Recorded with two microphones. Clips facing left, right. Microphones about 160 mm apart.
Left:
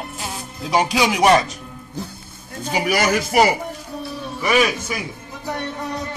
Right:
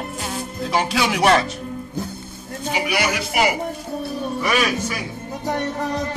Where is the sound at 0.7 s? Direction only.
15° left (ahead or behind).